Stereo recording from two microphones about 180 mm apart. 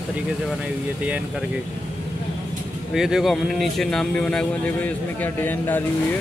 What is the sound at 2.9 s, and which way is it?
A man's voice, centre (ahead or behind).